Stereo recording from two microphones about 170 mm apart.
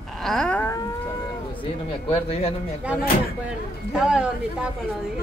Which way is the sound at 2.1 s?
35° left (ahead or behind).